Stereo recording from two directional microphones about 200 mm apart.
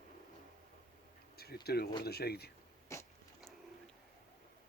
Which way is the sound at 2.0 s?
50° left (ahead or behind).